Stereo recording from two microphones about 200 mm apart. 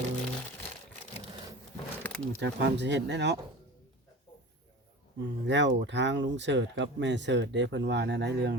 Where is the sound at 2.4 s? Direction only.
60° right (ahead or behind).